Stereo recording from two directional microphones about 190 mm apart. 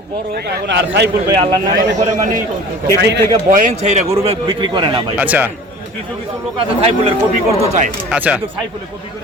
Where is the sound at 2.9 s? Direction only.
65° right (ahead or behind).